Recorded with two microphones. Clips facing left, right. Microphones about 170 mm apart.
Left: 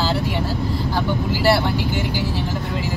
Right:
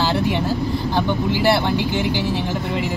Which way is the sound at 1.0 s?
20° right (ahead or behind).